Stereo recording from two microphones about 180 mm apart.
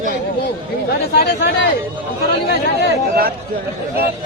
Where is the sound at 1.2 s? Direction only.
65° left (ahead or behind).